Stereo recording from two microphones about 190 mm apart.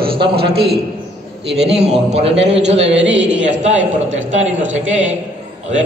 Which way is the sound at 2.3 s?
70° right (ahead or behind).